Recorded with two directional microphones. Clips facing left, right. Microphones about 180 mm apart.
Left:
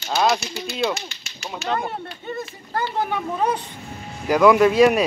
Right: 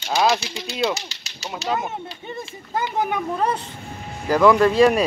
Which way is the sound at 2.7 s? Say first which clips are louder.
Right 1 dB; 10° right (ahead or behind).